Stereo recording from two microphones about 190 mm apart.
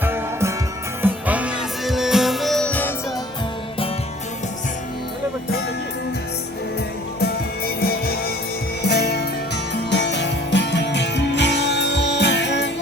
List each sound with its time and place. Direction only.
0.0 s music: 15° right (ahead or behind); by 2.9 s 5° left (ahead or behind)
7.2 s music: 55° left (ahead or behind)